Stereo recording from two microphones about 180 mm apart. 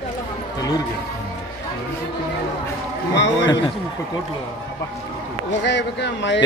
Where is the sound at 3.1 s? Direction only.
85° left.